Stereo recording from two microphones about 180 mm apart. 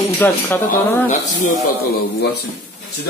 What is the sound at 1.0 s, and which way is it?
A man's voice, 45° left (ahead or behind).